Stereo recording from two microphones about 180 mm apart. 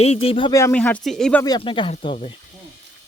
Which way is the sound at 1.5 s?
25° left (ahead or behind).